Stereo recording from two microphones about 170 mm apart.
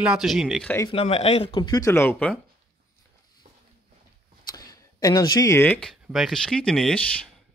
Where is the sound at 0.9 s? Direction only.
35° left (ahead or behind).